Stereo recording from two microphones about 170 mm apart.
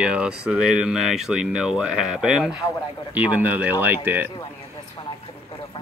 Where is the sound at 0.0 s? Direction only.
5° right (ahead or behind).